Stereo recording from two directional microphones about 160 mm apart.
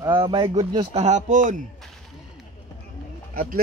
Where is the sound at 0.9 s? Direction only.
45° right (ahead or behind).